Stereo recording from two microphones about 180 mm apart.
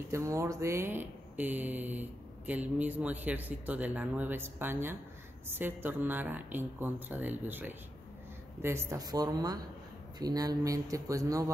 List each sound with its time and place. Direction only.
0.1 s speech: 15° right (ahead or behind)